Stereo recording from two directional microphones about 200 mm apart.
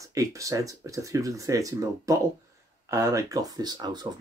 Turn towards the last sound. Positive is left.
turn(degrees=-20)  # may be behind; listen again after turning